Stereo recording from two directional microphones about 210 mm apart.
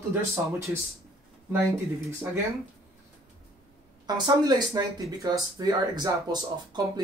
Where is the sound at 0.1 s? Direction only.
15° right (ahead or behind).